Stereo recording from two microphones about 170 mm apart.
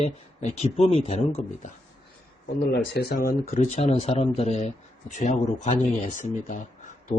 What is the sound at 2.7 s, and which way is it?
Speech, 70° left (ahead or behind).